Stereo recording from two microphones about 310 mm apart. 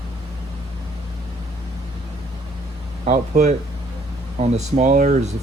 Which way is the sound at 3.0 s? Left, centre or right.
Right.